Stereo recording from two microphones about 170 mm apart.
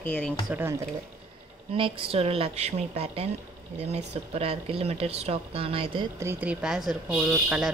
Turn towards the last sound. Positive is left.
turn(degrees=-5)  # may be behind; listen again after turning